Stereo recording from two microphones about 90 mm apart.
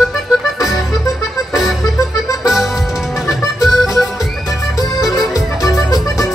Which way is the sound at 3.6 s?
5° right (ahead or behind).